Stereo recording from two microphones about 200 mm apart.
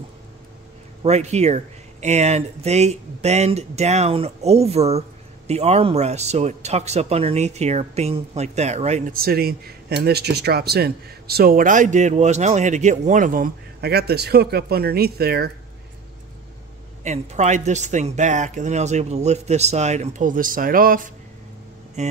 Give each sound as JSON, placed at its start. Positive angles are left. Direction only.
{"t": 1.0, "sound": "a man's voice", "side_deg": -35}
{"t": 9.2, "sound": "speech", "side_deg": -50}
{"t": 17.0, "sound": "a man's voice", "side_deg": -35}